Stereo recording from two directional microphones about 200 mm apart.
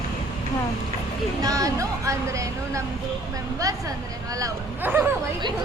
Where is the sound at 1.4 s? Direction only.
15° right (ahead or behind).